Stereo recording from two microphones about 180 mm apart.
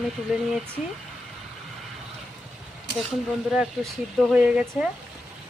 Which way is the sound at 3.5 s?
Centre (ahead or behind).